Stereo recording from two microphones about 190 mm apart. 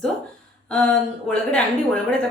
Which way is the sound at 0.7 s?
5° left (ahead or behind).